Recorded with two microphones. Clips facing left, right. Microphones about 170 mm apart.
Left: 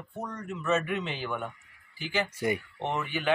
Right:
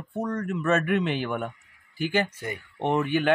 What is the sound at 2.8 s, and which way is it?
Speech, 55° right (ahead or behind).